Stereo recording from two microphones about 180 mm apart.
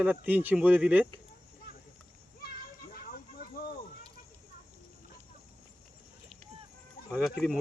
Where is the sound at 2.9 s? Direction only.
55° left (ahead or behind).